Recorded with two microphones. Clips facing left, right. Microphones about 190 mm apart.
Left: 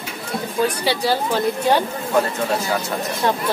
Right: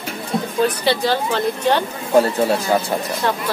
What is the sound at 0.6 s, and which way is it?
A man's voice, 10° left (ahead or behind).